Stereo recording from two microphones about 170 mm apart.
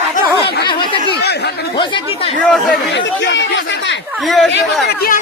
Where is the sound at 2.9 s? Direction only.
90° left.